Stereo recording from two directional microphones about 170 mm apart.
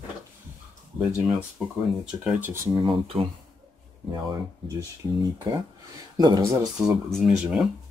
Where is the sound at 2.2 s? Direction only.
10° right (ahead or behind).